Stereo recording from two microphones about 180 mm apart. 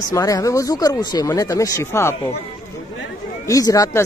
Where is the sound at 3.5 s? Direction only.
20° left (ahead or behind).